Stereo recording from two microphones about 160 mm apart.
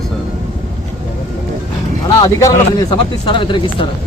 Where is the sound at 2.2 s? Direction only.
20° left (ahead or behind).